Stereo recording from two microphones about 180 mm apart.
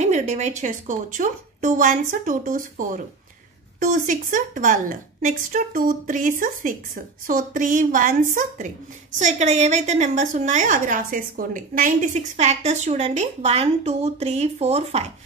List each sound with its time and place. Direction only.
0.0 s a woman's voice: 40° right (ahead or behind)